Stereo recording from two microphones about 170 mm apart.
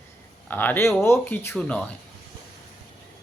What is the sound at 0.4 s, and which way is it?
Speech, 10° left (ahead or behind).